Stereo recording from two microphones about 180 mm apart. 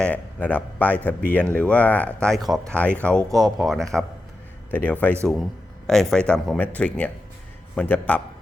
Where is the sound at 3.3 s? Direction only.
20° right (ahead or behind).